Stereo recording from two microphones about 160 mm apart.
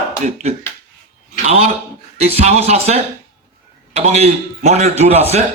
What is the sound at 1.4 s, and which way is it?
A man's voice, 40° right (ahead or behind).